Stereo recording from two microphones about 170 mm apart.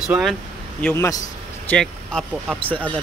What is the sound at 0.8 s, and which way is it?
Speech, 15° left (ahead or behind).